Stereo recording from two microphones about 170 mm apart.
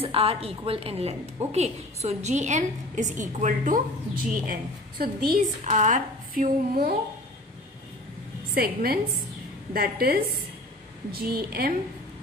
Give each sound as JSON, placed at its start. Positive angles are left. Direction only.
{"t": 0.0, "sound": "a woman's voice", "side_deg": -35}
{"t": 5.7, "sound": "a woman's voice", "side_deg": -45}
{"t": 8.5, "sound": "a woman's voice", "side_deg": -65}